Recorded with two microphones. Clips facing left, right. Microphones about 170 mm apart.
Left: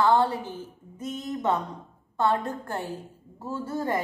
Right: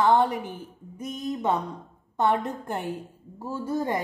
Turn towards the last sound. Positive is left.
turn(degrees=-15)  # may be behind; listen again after turning